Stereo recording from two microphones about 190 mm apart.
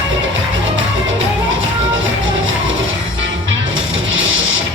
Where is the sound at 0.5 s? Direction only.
90° right.